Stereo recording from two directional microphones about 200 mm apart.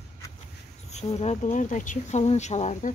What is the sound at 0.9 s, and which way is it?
Speech, 35° left (ahead or behind).